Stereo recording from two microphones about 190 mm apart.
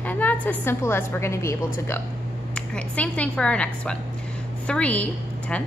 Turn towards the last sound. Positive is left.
turn(degrees=5)  # may be behind; listen again after turning